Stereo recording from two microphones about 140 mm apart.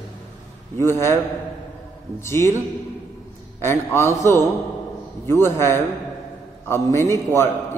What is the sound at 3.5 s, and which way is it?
A man's voice, 20° left (ahead or behind).